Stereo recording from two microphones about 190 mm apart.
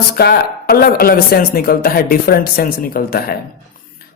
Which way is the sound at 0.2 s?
55° left (ahead or behind).